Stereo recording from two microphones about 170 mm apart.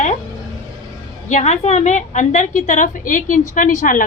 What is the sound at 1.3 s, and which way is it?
A woman's voice, 45° left (ahead or behind).